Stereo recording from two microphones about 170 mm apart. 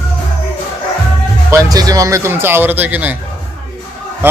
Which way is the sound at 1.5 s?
20° right (ahead or behind).